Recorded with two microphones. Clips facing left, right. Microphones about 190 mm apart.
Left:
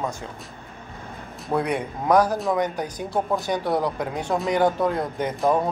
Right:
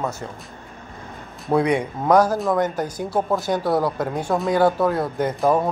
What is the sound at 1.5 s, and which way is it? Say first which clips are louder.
Speech: right 5 dB; 20° right (ahead or behind).